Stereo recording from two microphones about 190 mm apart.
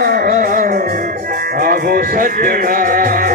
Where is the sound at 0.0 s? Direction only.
50° right (ahead or behind).